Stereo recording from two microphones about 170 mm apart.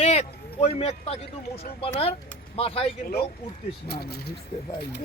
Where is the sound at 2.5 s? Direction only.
35° left (ahead or behind).